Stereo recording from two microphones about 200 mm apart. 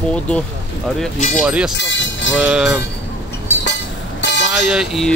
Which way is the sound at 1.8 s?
65° left (ahead or behind).